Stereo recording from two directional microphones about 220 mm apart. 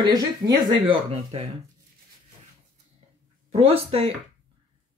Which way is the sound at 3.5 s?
25° right (ahead or behind).